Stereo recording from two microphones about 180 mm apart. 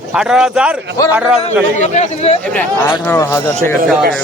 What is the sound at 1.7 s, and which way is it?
Speech, 40° left (ahead or behind).